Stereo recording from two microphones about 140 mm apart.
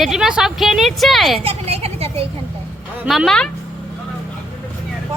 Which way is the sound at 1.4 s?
45° right (ahead or behind).